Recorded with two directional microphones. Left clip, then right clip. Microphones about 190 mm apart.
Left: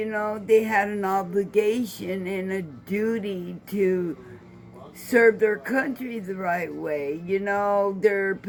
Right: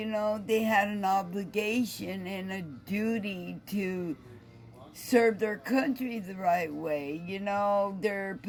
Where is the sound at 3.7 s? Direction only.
55° right (ahead or behind).